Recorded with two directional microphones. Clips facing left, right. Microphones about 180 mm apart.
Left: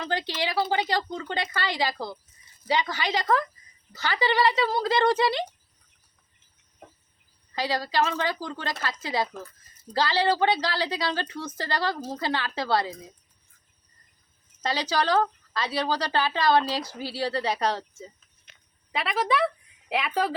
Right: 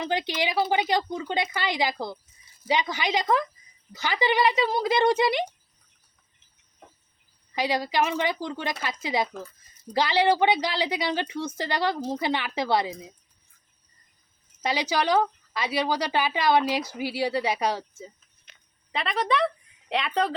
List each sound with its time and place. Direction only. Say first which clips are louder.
0.0 s speech: right 2 dB; 15° right (ahead or behind)
7.5 s speech: right 1 dB; 15° right (ahead or behind)
14.6 s speech: right 1 dB; 15° right (ahead or behind)
18.9 s a woman's voice: even; 5° left (ahead or behind)